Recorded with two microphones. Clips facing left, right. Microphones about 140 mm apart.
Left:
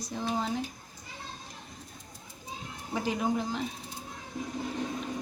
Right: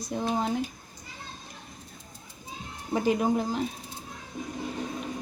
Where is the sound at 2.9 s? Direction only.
50° right (ahead or behind).